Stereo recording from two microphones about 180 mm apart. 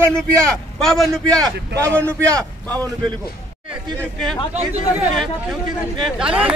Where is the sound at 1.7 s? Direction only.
15° right (ahead or behind).